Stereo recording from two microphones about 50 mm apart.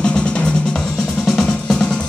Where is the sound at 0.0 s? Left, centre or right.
Left.